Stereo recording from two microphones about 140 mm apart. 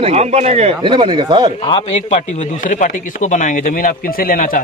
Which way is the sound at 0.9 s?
35° right (ahead or behind).